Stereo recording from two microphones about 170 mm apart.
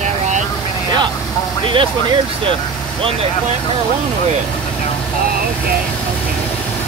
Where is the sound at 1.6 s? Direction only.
30° right (ahead or behind).